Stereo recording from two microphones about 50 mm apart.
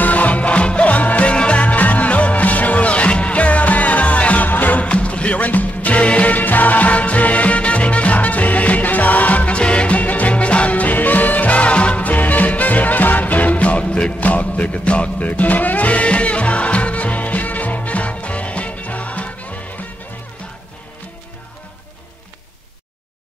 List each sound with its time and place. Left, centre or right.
0.0 s music: left
4.8 s music: left